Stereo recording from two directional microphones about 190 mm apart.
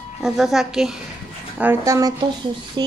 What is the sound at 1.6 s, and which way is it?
Speech, 15° right (ahead or behind).